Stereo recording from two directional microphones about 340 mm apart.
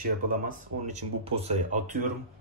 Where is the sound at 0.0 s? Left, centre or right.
Right.